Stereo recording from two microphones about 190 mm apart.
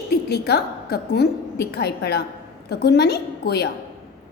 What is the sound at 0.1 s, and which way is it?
A woman's voice, 60° left (ahead or behind).